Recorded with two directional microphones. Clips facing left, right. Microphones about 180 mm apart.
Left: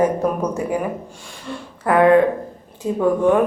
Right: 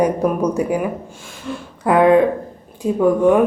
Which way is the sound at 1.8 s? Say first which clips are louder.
Right 1 dB; 15° right (ahead or behind).